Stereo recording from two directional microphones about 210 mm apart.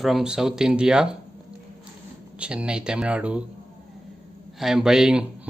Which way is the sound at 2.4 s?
5° right (ahead or behind).